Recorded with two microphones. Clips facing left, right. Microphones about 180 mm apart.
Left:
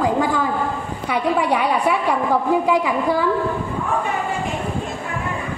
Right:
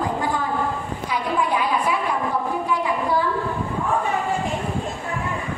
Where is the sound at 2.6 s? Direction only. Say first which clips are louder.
Left 5 dB; 90° left.